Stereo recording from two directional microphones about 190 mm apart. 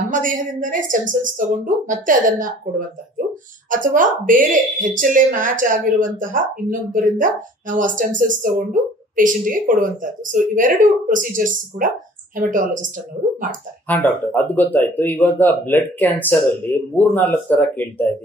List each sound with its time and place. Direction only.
0.1 s speech: 45° right (ahead or behind)
3.7 s speech: 45° right (ahead or behind)
13.8 s speech: 10° left (ahead or behind)